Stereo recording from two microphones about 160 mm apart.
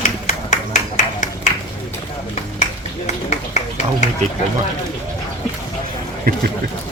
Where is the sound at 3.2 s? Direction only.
45° left (ahead or behind).